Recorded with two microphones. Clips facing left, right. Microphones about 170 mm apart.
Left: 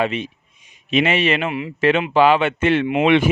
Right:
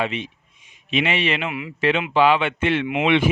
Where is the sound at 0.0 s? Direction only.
45° left (ahead or behind).